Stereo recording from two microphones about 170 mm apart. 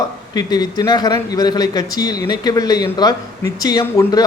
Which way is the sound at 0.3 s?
25° left (ahead or behind).